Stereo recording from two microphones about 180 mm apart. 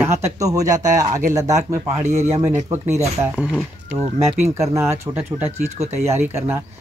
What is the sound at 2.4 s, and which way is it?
Speech, 15° right (ahead or behind).